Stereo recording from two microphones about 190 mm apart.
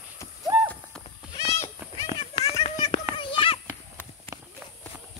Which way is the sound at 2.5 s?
30° left (ahead or behind).